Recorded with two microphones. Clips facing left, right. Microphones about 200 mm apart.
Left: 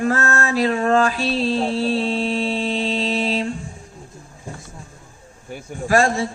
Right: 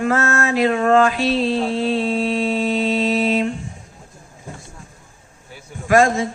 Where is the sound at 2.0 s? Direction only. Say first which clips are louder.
Right 2 dB; 30° left (ahead or behind).